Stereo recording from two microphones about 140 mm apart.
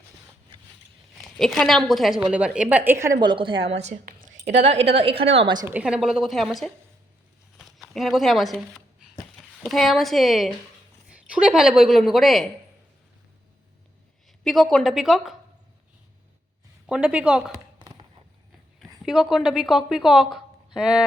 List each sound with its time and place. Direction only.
1.1 s a woman's voice: centre (ahead or behind); by 3.2 s 15° right (ahead or behind)
3.2 s a woman's voice: 35° right (ahead or behind)
4.0 s a sound: 80° right
4.4 s a woman's voice: 50° right (ahead or behind)
5.6 s a woman's voice: 10° right (ahead or behind)
14.4 s a woman's voice: centre (ahead or behind)
16.9 s speech: 10° right (ahead or behind)
17.7 s a sound: 35° right (ahead or behind)
19.0 s a woman's voice: centre (ahead or behind)